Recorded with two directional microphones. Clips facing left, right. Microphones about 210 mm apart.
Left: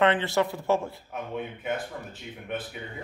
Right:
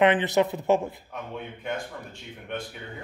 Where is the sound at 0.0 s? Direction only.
20° right (ahead or behind).